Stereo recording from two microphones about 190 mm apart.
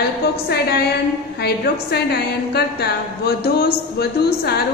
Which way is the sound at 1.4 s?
55° left (ahead or behind).